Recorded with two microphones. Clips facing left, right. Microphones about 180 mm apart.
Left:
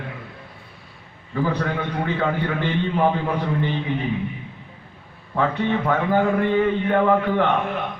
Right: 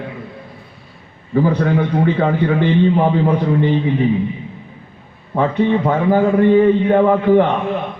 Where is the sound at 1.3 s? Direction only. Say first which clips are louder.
Right 8 dB; 20° right (ahead or behind).